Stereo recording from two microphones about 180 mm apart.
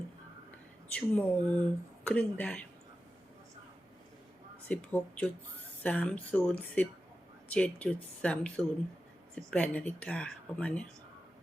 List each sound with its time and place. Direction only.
0.9 s speech: 10° left (ahead or behind)
4.7 s speech: 5° left (ahead or behind)